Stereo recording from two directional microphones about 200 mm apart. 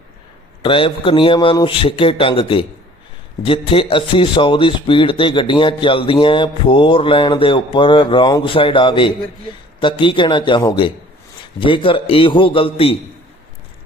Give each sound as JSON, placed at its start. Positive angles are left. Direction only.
{"t": 0.6, "sound": "speech", "side_deg": 25}